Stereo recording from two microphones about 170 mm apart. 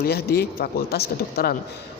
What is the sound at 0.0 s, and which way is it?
Speech, 65° left (ahead or behind).